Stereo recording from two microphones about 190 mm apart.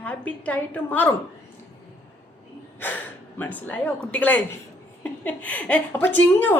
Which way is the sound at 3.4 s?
10° left (ahead or behind).